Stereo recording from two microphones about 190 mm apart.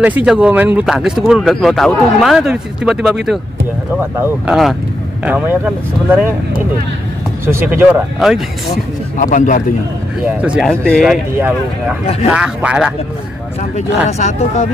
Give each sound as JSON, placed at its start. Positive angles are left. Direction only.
{"t": 0.0, "sound": "speech", "side_deg": -5}
{"t": 7.4, "sound": "speech", "side_deg": -15}
{"t": 9.2, "sound": "a man's voice", "side_deg": 40}
{"t": 10.2, "sound": "speech", "side_deg": -5}
{"t": 12.3, "sound": "speech", "side_deg": -5}
{"t": 14.1, "sound": "a man's voice", "side_deg": 35}